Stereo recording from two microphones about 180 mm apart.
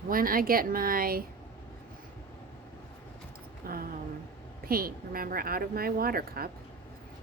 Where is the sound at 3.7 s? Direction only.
55° right (ahead or behind).